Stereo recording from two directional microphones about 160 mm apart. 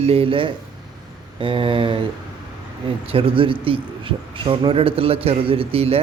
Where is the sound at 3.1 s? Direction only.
35° right (ahead or behind).